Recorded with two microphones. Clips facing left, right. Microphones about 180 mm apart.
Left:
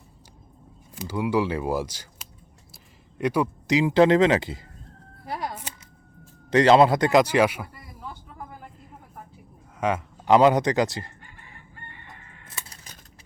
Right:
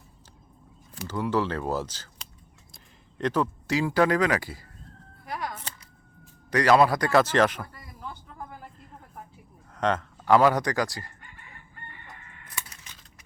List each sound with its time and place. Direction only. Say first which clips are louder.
0.9 s speech: left 3 dB; 10° left (ahead or behind)
5.2 s music: left 2 dB; 30° left (ahead or behind)
6.5 s speech: left 4 dB; 25° left (ahead or behind); by 8.4 s 10° left (ahead or behind)
9.7 s speech: left 1 dB; 10° left (ahead or behind)
10.2 s speech: left 3 dB; 20° left (ahead or behind)
12.5 s a sound: right 1 dB; 30° left (ahead or behind)